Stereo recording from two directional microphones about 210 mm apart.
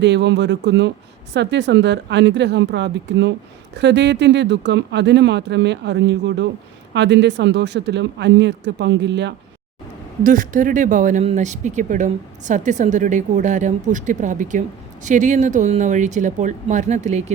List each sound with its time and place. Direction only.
0.0 s speech: 55° right (ahead or behind)
10.2 s speech: 40° right (ahead or behind)